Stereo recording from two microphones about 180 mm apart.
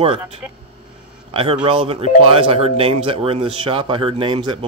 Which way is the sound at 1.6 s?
30° right (ahead or behind).